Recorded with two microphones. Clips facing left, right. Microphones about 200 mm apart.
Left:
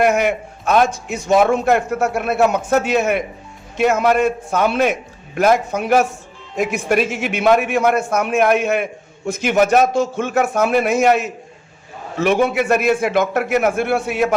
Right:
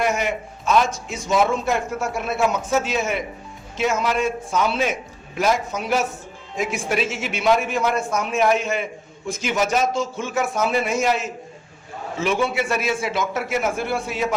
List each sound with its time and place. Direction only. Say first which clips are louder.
0.0 s a man's voice: left 7 dB; 60° left (ahead or behind)
12.4 s a man's voice: left 6 dB; 50° left (ahead or behind)